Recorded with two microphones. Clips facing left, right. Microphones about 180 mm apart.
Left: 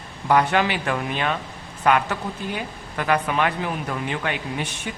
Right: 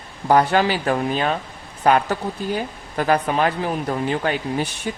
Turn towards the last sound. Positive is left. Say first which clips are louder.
# right 5 dB
turn(degrees=-35)  # may be behind; listen again after turning